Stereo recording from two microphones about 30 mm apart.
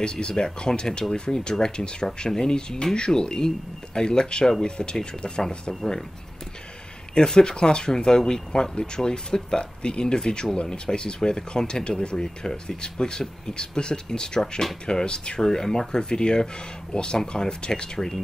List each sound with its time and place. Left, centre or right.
0.0 s speech: left
1.5 s speech: centre
7.3 s speech: left
15.4 s speech: centre